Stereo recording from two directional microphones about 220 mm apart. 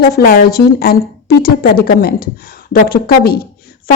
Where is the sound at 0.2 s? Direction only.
45° left (ahead or behind).